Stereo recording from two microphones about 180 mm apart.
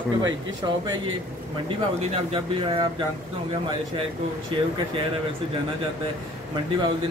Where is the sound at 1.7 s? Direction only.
35° right (ahead or behind).